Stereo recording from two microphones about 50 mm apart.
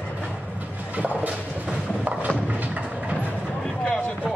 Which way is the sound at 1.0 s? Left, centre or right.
Right.